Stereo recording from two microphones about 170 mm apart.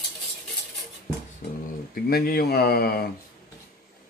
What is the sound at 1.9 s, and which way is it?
Speech, 60° left (ahead or behind).